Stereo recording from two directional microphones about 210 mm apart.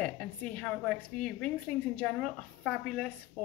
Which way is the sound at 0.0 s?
5° left (ahead or behind).